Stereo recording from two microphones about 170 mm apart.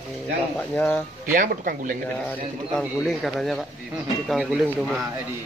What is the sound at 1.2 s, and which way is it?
Speech, 50° right (ahead or behind).